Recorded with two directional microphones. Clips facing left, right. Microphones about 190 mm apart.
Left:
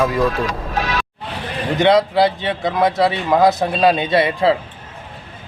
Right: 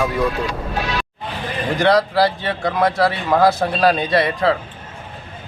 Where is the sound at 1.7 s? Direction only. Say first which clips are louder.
Left 2 dB; 20° left (ahead or behind).